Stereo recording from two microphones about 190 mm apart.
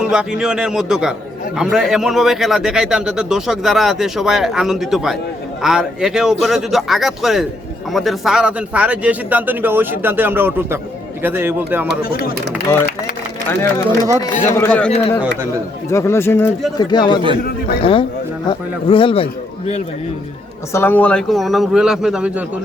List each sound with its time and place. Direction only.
0.0 s a man's voice: 5° right (ahead or behind)
13.5 s speech: 15° left (ahead or behind)
16.7 s speech: 20° left (ahead or behind)
17.4 s a man's voice: 55° left (ahead or behind)
18.4 s speech: 25° left (ahead or behind)
20.7 s a man's voice: 10° left (ahead or behind)